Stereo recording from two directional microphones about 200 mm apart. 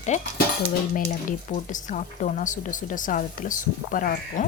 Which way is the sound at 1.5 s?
40° left (ahead or behind).